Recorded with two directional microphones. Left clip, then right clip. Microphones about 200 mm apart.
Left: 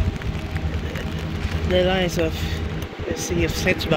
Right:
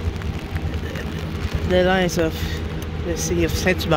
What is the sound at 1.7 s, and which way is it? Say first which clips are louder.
Speech: right 2 dB; 25° right (ahead or behind).